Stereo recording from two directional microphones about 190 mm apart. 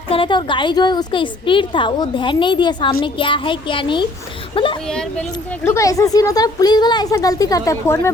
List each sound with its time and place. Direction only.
0.1 s a woman's voice: 25° left (ahead or behind)
5.6 s a woman's voice: 15° left (ahead or behind)